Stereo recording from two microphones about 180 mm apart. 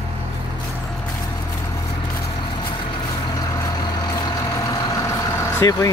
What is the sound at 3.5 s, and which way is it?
Vehicle, 20° left (ahead or behind).